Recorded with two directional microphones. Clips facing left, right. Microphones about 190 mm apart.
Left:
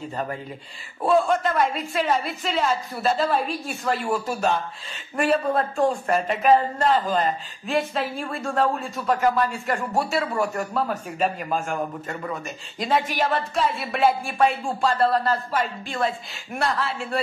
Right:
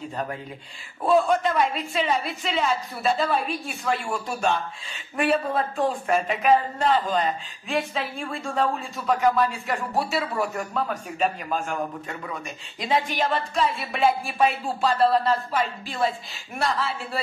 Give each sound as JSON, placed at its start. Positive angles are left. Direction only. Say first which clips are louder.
{"t": 1.2, "sound": "speech", "louder": "even", "side_deg": 0}